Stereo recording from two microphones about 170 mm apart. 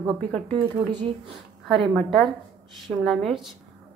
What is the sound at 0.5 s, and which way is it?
Speech, 30° right (ahead or behind).